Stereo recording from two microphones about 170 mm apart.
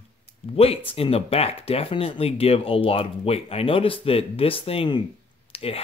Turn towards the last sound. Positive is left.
turn(degrees=35)  # may be behind; listen again after turning